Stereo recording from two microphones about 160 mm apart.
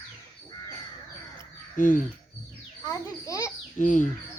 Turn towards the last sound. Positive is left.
turn(degrees=55)  # may be behind; listen again after turning